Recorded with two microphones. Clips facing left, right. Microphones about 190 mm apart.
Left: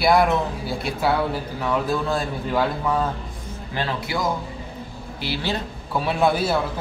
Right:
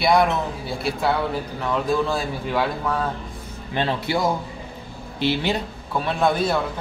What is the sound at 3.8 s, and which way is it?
Speech, 25° right (ahead or behind).